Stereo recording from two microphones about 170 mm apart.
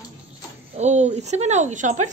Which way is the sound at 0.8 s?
40° right (ahead or behind).